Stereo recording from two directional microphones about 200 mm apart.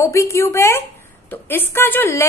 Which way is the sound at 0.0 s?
15° left (ahead or behind).